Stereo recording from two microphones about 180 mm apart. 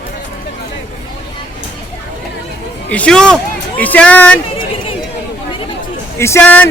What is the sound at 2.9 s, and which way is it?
Speech, 5° left (ahead or behind).